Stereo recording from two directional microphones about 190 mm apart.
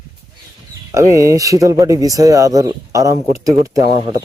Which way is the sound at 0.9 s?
15° right (ahead or behind).